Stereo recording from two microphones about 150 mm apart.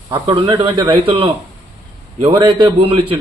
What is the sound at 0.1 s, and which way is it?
Speech, 30° right (ahead or behind).